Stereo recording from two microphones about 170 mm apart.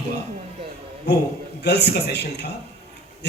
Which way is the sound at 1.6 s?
80° left.